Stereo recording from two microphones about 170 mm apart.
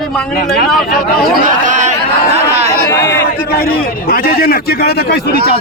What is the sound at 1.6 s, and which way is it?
Chatter, 45° right (ahead or behind).